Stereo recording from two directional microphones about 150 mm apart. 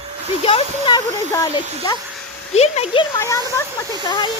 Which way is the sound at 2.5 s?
45° left (ahead or behind).